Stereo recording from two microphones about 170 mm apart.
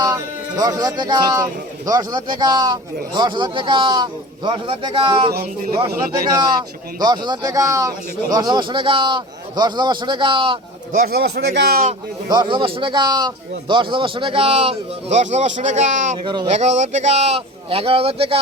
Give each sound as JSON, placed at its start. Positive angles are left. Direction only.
{"t": 0.0, "sound": "speech", "side_deg": -20}
{"t": 5.3, "sound": "speech", "side_deg": -60}
{"t": 7.0, "sound": "speech", "side_deg": -25}
{"t": 10.9, "sound": "speech", "side_deg": -65}
{"t": 12.3, "sound": "a man's voice", "side_deg": -25}
{"t": 16.1, "sound": "speech", "side_deg": -25}
{"t": 16.5, "sound": "a man's voice", "side_deg": -40}